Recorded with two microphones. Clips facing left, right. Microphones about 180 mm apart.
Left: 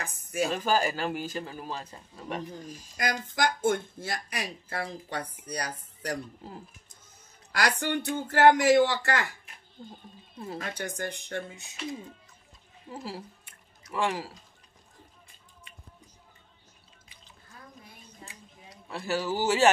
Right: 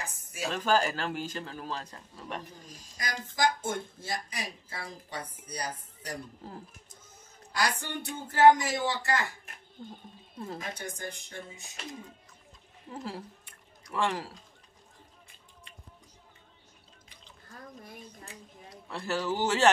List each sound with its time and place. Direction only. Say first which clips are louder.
0.4 s speech: left 1 dB; 5° left (ahead or behind)
3.0 s speech: left 2 dB; 65° left (ahead or behind)
7.5 s speech: left 4 dB; 70° left (ahead or behind)
10.6 s speech: left 4 dB; 70° left (ahead or behind)
12.9 s speech: even; 5° left (ahead or behind)
18.9 s a man's voice: left 1 dB; 5° left (ahead or behind)